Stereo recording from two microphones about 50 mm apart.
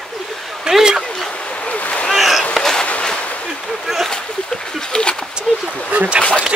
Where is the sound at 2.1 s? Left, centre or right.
Centre.